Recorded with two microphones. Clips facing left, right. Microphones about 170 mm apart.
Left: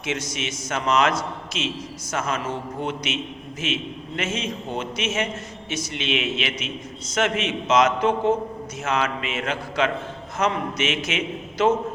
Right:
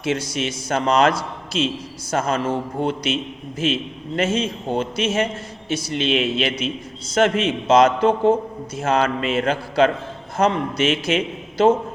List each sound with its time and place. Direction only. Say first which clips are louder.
0.0 s a man's voice: right 6 dB; 30° right (ahead or behind)